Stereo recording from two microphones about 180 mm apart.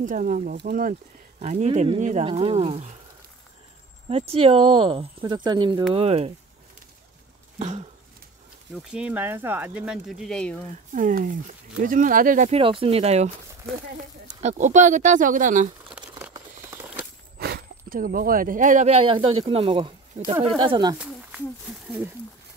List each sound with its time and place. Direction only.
0.0 s speech: 45° right (ahead or behind)
1.4 s speech: 40° right (ahead or behind)
4.1 s speech: 30° right (ahead or behind)
7.5 s a sound: 40° right (ahead or behind)
8.9 s speech: 5° right (ahead or behind)
11.0 s speech: 45° right (ahead or behind)
16.7 s a sound: 10° right (ahead or behind)
17.4 s speech: 60° right (ahead or behind); by 20.9 s 25° right (ahead or behind)
21.0 s speech: 5° right (ahead or behind)